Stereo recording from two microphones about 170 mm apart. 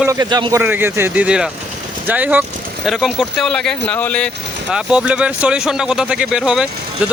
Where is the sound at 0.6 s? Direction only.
10° right (ahead or behind); by 4.8 s 5° left (ahead or behind).